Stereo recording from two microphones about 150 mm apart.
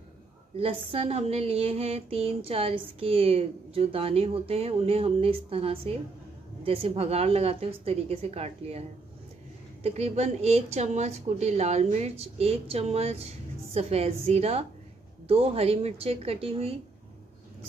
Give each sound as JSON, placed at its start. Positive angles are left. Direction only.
{"t": 0.6, "sound": "speech", "side_deg": -40}
{"t": 9.8, "sound": "speech", "side_deg": -45}